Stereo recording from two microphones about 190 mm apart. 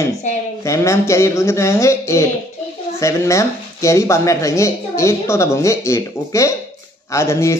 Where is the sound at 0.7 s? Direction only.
15° left (ahead or behind).